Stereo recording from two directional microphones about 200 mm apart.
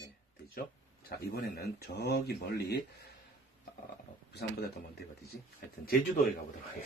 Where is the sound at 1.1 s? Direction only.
50° left (ahead or behind).